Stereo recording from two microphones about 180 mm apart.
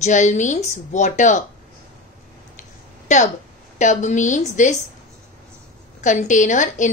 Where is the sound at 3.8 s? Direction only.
40° left (ahead or behind).